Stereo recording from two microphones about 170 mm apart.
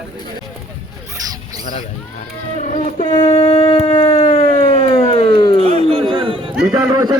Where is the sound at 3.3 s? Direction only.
35° left (ahead or behind).